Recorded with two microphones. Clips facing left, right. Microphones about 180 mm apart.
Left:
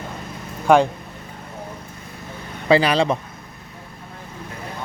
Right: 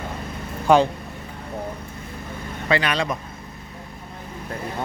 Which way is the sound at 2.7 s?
30° left (ahead or behind).